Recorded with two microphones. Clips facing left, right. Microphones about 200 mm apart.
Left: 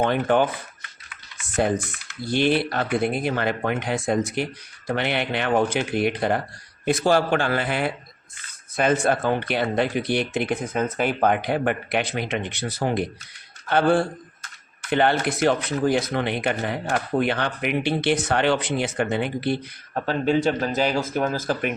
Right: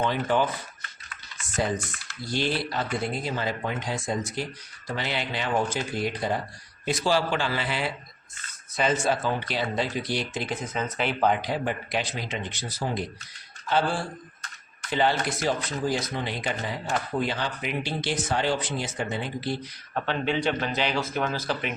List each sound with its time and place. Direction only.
0.0 s speech: 55° left (ahead or behind)
2.2 s speech: 60° left (ahead or behind)
6.8 s a man's voice: 55° left (ahead or behind)
19.9 s a man's voice: 40° left (ahead or behind)